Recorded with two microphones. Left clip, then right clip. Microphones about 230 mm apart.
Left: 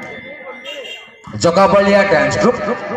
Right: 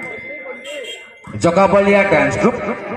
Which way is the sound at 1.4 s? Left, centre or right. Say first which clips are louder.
Left 1 dB; left.